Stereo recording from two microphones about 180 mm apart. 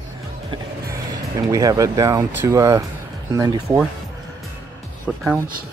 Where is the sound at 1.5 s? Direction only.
20° right (ahead or behind).